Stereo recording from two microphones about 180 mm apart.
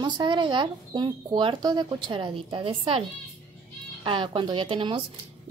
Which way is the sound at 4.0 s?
30° right (ahead or behind).